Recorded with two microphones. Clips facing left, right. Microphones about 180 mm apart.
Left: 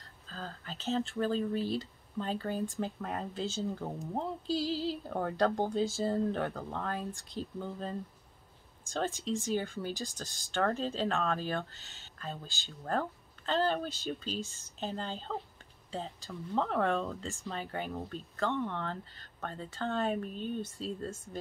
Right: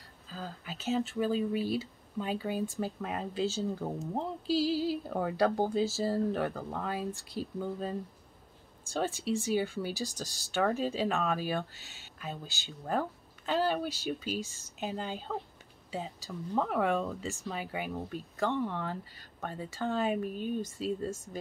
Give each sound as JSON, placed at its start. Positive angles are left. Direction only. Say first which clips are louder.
{"t": 0.3, "sound": "speech", "louder": "right 2 dB", "side_deg": -10}